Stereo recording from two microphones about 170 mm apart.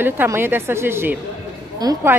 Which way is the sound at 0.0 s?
10° right (ahead or behind).